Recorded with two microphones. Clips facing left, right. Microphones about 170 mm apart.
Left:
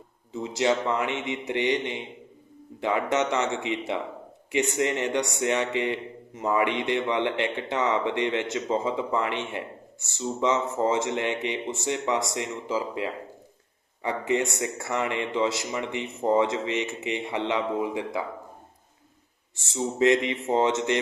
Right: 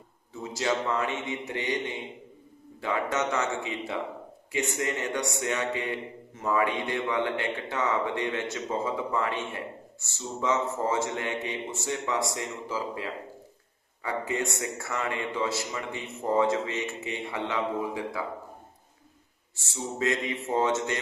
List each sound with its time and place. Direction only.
0.5 s speech: 20° left (ahead or behind)
20.0 s speech: 20° left (ahead or behind)